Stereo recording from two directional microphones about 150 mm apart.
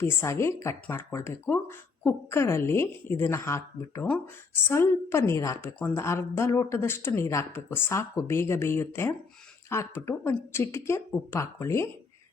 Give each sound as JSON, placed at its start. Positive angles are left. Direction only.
{"t": 0.0, "sound": "a woman's voice", "side_deg": 15}